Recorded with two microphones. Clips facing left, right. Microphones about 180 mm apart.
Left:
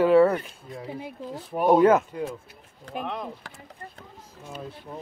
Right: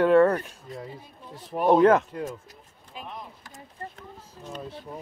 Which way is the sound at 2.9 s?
80° left.